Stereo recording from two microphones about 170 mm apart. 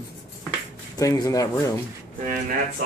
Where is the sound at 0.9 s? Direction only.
20° left (ahead or behind).